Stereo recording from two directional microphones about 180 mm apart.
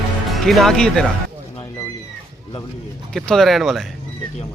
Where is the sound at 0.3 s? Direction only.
Centre (ahead or behind).